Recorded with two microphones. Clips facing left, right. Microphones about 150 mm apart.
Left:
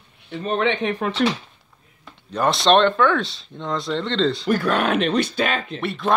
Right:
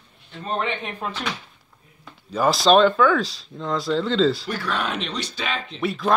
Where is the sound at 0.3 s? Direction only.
75° left (ahead or behind).